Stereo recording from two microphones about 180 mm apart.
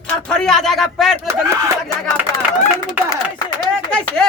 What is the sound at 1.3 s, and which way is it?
Speech, 15° right (ahead or behind).